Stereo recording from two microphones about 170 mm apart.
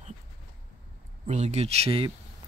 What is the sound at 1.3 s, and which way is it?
Speech, 40° right (ahead or behind).